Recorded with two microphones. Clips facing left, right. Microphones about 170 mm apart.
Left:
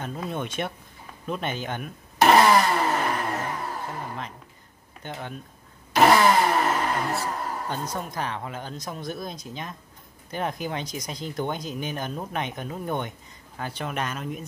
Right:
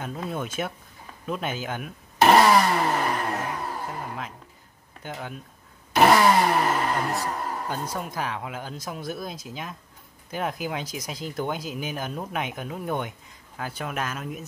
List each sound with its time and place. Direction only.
0.0 s speech: 5° right (ahead or behind)
1.2 s vehicle: 5° right (ahead or behind)
4.0 s neigh: 5° right (ahead or behind)
5.0 s speech: 5° right (ahead or behind)
5.9 s vehicle: 5° right (ahead or behind)
7.2 s a sound: 5° right (ahead or behind)
7.9 s speech: 5° right (ahead or behind)